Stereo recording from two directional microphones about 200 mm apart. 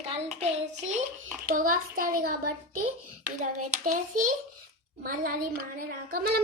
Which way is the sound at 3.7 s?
45° right (ahead or behind).